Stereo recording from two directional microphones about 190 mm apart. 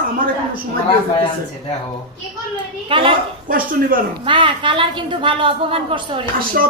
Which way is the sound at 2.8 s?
25° right (ahead or behind).